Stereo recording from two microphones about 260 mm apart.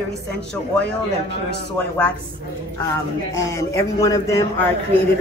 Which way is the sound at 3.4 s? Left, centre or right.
Centre.